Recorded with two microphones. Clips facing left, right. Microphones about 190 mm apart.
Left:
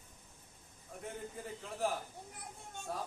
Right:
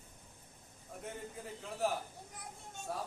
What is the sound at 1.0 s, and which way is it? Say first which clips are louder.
A man's voice: left 1 dB; centre (ahead or behind).